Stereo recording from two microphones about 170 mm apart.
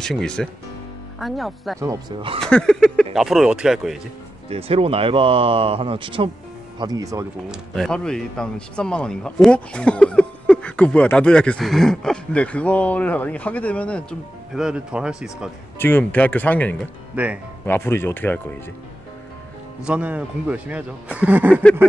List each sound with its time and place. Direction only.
0.0 s speech: 5° left (ahead or behind)
1.8 s speech: 20° right (ahead or behind)
2.4 s speech: 5° left (ahead or behind)
4.5 s speech: 35° right (ahead or behind); by 7.2 s 20° right (ahead or behind)
7.7 s a man's voice: 5° left (ahead or behind)
14.5 s speech: 5° right (ahead or behind)
15.8 s a man's voice: 10° left (ahead or behind)
17.1 s speech: 10° right (ahead or behind)
17.6 s a man's voice: 15° left (ahead or behind)
19.8 s speech: 5° right (ahead or behind)